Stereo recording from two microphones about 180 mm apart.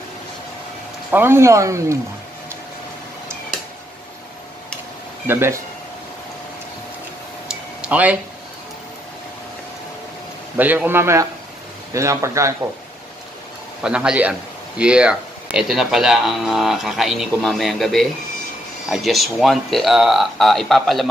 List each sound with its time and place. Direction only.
1.1 s speech: 10° right (ahead or behind)
5.2 s speech: 15° right (ahead or behind)
7.4 s a sound: 5° right (ahead or behind)
10.6 s speech: 10° right (ahead or behind)
13.8 s speech: 5° right (ahead or behind)